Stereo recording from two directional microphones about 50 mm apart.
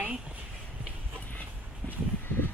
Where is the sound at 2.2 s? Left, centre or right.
Left.